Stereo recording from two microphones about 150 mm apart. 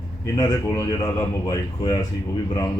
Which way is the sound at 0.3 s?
25° left (ahead or behind).